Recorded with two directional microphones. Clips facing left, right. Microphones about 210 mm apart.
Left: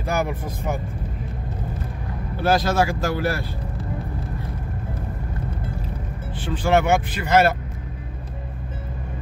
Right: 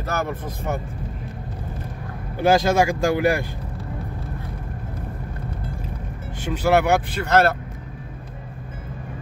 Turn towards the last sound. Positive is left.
turn(degrees=5)  # may be behind; listen again after turning